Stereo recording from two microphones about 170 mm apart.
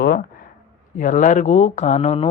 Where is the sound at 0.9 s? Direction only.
50° left (ahead or behind).